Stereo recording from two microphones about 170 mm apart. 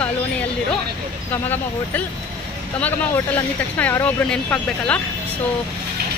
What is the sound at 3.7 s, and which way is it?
Speech, 10° left (ahead or behind).